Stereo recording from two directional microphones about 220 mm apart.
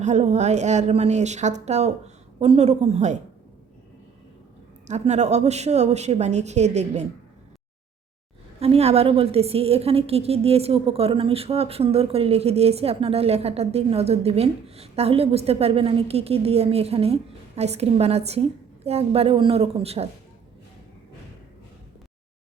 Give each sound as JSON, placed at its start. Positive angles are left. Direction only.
{"t": 0.0, "sound": "a woman's voice", "side_deg": -30}
{"t": 4.9, "sound": "a woman's voice", "side_deg": -30}
{"t": 8.6, "sound": "a woman's voice", "side_deg": -30}